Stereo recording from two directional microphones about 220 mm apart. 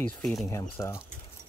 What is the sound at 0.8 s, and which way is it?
Speech, 10° left (ahead or behind).